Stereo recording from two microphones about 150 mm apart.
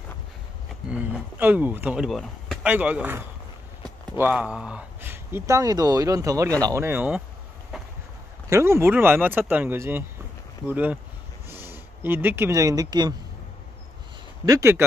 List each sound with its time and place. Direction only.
0.8 s speech: 5° right (ahead or behind)
2.0 s speech: centre (ahead or behind)
2.6 s speech: 10° right (ahead or behind)
7.7 s run: 5° right (ahead or behind)
8.5 s speech: 20° right (ahead or behind)
14.4 s speech: 20° right (ahead or behind)